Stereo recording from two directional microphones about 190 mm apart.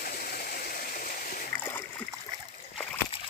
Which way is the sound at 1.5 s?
10° left (ahead or behind).